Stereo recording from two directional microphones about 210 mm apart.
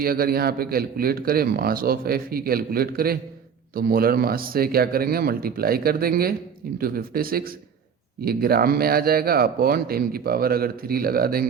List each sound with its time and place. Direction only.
0.0 s speech: 45° right (ahead or behind)